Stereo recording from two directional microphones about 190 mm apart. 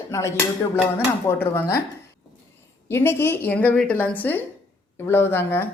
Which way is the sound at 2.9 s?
10° left (ahead or behind).